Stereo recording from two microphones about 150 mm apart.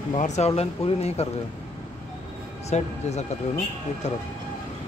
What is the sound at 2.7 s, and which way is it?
Speech, 45° left (ahead or behind).